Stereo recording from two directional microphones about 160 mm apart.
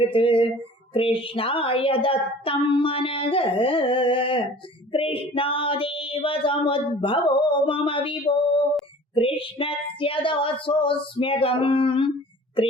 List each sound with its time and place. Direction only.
0.0 s child singing: 35° left (ahead or behind)